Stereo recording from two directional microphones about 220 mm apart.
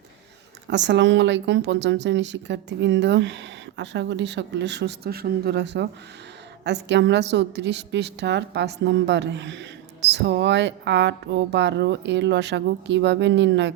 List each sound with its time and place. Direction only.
0.7 s speech: 50° right (ahead or behind)